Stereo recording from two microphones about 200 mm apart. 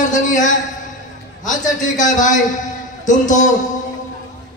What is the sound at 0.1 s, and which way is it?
Speech, 40° left (ahead or behind).